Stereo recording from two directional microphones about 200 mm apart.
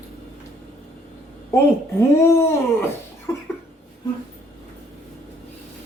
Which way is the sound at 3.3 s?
15° left (ahead or behind).